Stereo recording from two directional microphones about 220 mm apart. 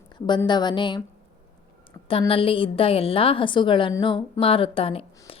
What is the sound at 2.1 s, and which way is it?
A woman's voice, 25° left (ahead or behind).